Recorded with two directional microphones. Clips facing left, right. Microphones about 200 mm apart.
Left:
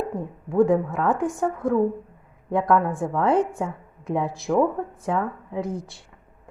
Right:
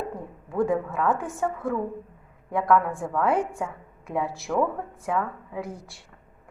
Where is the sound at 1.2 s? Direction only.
15° left (ahead or behind).